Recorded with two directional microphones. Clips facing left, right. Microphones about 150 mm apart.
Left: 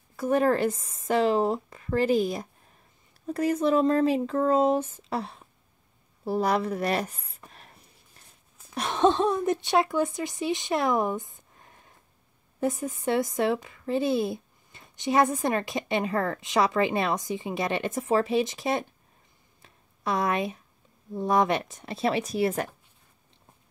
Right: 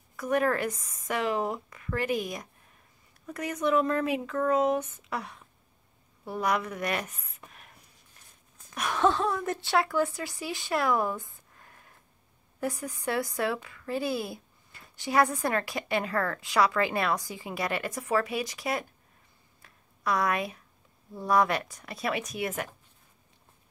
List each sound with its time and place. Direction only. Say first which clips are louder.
0.1 s a woman's voice: left 4 dB; 30° left (ahead or behind)
8.7 s a woman's voice: left 3 dB; 25° left (ahead or behind)
19.6 s a sound: left 1 dB; 25° left (ahead or behind)
21.1 s a woman's voice: left 2 dB; 20° left (ahead or behind)